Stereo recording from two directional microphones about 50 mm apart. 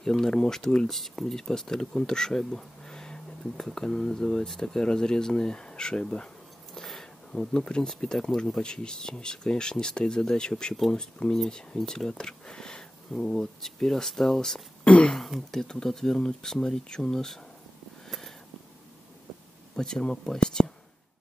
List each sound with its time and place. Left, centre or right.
0.0 s speech: centre
6.7 s a sound: centre
7.3 s speech: centre
19.7 s speech: centre